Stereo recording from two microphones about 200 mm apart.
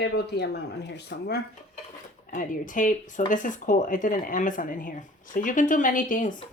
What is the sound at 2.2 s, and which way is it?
Speech, 40° left (ahead or behind).